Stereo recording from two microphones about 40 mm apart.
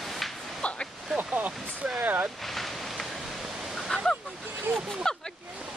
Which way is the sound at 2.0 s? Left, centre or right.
Right.